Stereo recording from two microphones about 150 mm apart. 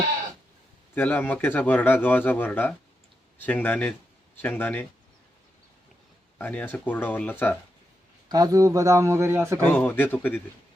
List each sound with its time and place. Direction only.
0.9 s speech: 10° left (ahead or behind)
6.4 s speech: 10° left (ahead or behind)
8.3 s a man's voice: 25° right (ahead or behind)
9.6 s speech: 10° left (ahead or behind)